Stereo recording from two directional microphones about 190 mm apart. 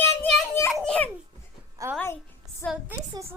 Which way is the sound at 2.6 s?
10° left (ahead or behind).